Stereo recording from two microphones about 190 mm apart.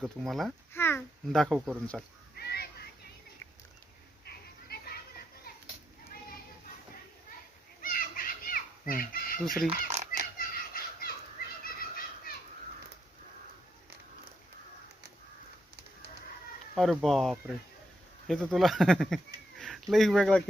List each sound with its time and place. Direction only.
0.0 s a child's voice: centre (ahead or behind)
0.7 s a child's voice: 10° left (ahead or behind); by 1.8 s 5° right (ahead or behind)
2.3 s a sound: 55° left (ahead or behind)
4.3 s a sound: 55° left (ahead or behind)
7.8 s children playing: 50° left (ahead or behind)
9.6 s fowl: 35° right (ahead or behind)
10.3 s a sound: 50° left (ahead or behind)
11.6 s neigh: 50° left (ahead or behind)
16.7 s a child's voice: centre (ahead or behind)